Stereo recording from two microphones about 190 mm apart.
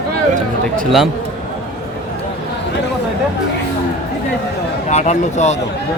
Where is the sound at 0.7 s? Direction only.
Centre (ahead or behind).